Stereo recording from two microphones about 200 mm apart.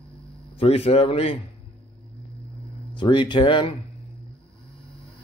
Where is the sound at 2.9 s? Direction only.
25° left (ahead or behind).